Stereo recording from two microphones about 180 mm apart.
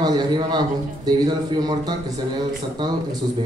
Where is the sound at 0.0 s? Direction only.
20° right (ahead or behind).